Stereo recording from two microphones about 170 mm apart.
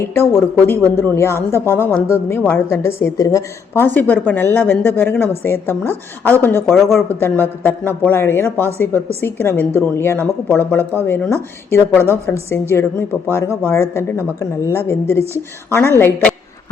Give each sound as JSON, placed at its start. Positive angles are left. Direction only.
{"t": 0.0, "sound": "a woman's voice", "side_deg": 15}
{"t": 6.7, "sound": "speech", "side_deg": 0}
{"t": 7.1, "sound": "a woman's voice", "side_deg": 10}